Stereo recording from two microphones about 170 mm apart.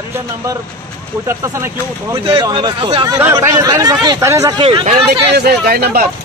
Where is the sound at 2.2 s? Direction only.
30° right (ahead or behind).